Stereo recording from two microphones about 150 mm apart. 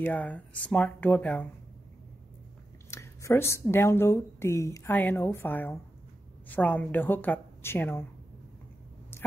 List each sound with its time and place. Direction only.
0.0 s speech: 10° left (ahead or behind)
2.9 s speech: 20° left (ahead or behind)